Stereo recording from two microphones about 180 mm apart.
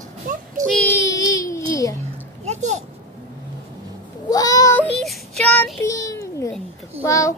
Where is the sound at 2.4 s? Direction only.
40° right (ahead or behind).